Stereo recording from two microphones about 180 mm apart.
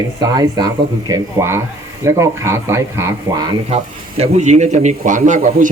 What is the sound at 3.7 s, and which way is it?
Speech, 35° right (ahead or behind).